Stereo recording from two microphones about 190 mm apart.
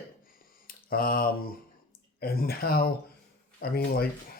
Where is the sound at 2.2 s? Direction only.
55° left (ahead or behind).